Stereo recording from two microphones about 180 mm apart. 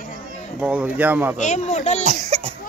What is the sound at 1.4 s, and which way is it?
Speech, 40° left (ahead or behind).